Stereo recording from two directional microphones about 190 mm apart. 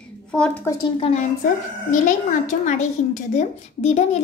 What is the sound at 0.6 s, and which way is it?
Speech, 20° left (ahead or behind).